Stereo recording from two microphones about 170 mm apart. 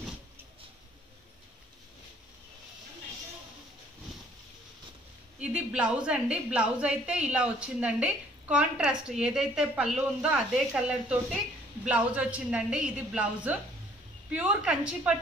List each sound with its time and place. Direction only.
5.4 s a woman's voice: 5° right (ahead or behind)